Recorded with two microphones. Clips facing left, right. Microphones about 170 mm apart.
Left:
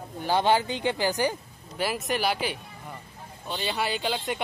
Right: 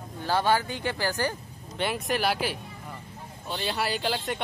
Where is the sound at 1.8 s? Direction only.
Centre (ahead or behind).